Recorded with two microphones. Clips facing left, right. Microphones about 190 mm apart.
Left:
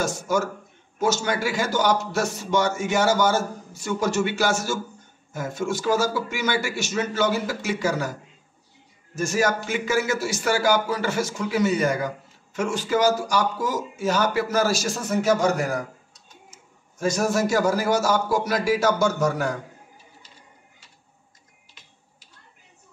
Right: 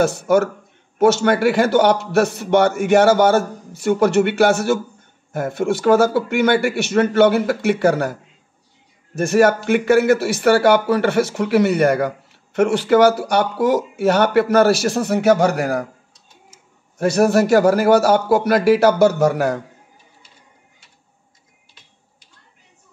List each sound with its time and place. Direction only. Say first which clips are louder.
0.0 s speech: right 8 dB; 60° right (ahead or behind)
17.0 s speech: right 7 dB; 65° right (ahead or behind)